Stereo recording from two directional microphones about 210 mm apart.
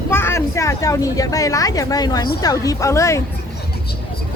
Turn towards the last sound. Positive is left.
turn(degrees=15)  # may be behind; listen again after turning